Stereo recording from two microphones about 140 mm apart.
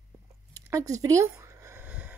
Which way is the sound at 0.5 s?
20° right (ahead or behind).